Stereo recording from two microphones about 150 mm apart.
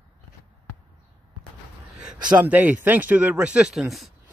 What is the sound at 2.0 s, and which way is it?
Speech, 5° right (ahead or behind).